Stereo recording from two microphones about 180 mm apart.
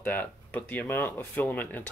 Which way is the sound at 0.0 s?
10° left (ahead or behind).